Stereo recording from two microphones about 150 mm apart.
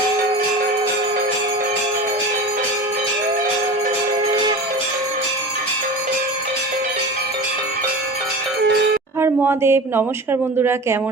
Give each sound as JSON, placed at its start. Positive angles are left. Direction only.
{"t": 9.2, "sound": "speech", "side_deg": -15}